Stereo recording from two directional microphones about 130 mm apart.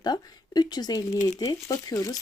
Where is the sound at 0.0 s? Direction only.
30° left (ahead or behind).